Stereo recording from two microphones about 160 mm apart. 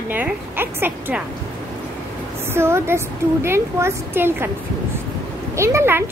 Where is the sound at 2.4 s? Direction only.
15° right (ahead or behind).